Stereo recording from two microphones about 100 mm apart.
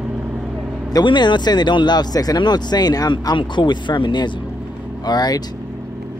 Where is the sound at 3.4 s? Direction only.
50° left (ahead or behind).